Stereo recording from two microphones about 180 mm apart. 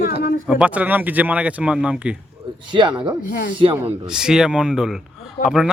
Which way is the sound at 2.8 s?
25° right (ahead or behind).